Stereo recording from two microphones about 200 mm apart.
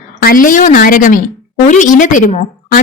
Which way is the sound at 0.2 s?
45° left (ahead or behind).